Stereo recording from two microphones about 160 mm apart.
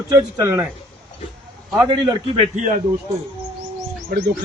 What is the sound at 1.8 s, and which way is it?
Speech, 30° right (ahead or behind).